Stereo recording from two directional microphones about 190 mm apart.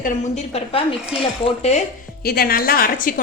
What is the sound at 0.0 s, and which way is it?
Speech, 35° left (ahead or behind).